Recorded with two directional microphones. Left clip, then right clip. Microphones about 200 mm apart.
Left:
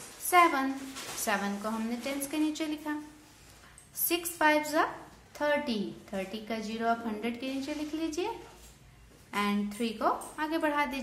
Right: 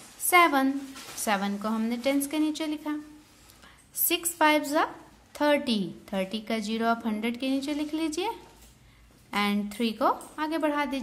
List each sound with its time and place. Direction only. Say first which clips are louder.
0.3 s a woman's voice: right 3 dB; 45° right (ahead or behind)
4.0 s a woman's voice: right 3 dB; 45° right (ahead or behind)
9.3 s a woman's voice: right 3 dB; 45° right (ahead or behind)